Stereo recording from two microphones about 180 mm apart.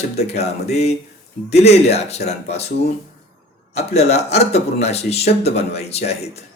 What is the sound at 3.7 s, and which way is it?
Speech, 35° left (ahead or behind).